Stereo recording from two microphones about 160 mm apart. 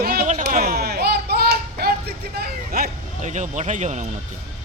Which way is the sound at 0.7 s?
80° right.